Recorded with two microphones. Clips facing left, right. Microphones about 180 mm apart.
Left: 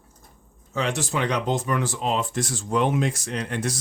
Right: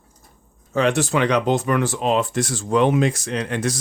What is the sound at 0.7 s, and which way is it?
Speech, 60° right (ahead or behind).